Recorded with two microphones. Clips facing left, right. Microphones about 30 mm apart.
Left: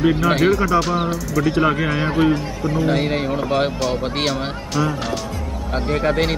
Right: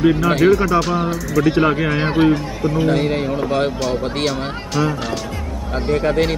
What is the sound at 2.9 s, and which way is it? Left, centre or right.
Speech, centre.